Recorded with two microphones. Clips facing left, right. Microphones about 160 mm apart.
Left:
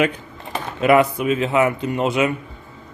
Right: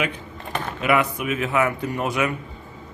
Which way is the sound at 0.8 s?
35° left (ahead or behind).